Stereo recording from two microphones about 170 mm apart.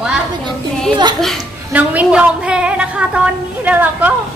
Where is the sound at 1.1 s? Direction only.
Centre (ahead or behind).